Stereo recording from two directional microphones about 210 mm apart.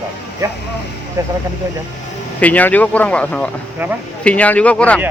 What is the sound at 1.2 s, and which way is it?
Speech, 10° right (ahead or behind).